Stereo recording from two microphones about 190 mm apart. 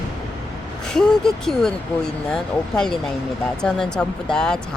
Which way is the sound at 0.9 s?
5° left (ahead or behind).